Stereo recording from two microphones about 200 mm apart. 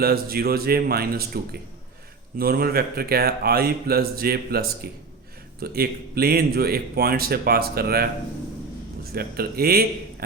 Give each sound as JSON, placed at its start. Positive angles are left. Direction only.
{"t": 0.0, "sound": "speech", "side_deg": -50}
{"t": 2.4, "sound": "speech", "side_deg": -50}
{"t": 9.1, "sound": "speech", "side_deg": -50}